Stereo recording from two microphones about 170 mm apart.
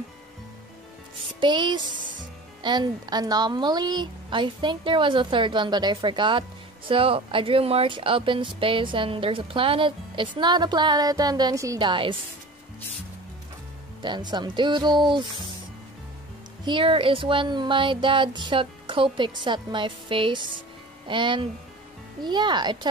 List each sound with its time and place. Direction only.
1.4 s speech: 25° right (ahead or behind)
14.0 s speech: 25° right (ahead or behind)
16.6 s speech: 30° right (ahead or behind)